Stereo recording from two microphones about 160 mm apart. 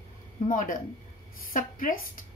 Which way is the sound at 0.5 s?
55° left (ahead or behind).